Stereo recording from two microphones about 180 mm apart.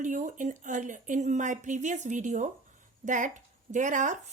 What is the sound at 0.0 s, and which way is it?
Speech, 45° right (ahead or behind).